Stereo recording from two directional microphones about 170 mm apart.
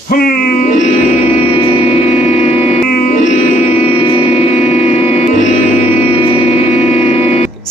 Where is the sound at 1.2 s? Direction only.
35° left (ahead or behind).